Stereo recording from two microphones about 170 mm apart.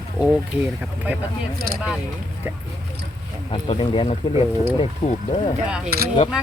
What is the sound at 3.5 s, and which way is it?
Speech, 30° left (ahead or behind).